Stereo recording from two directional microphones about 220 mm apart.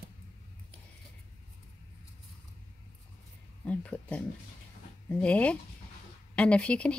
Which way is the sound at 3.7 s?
5° left (ahead or behind).